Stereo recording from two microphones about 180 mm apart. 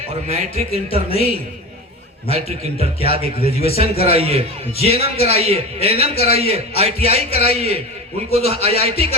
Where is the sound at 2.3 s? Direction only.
35° right (ahead or behind).